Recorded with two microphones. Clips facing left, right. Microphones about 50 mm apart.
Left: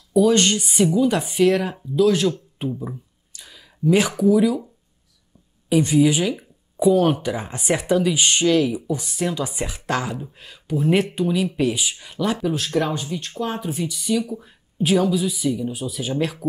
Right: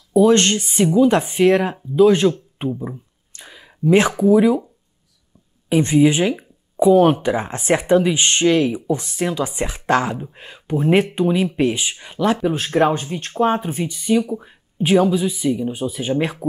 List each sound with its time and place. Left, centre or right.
0.3 s speech: right
2.7 s speech: centre
5.7 s speech: right